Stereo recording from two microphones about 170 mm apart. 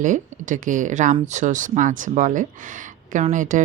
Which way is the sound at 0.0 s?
50° right (ahead or behind).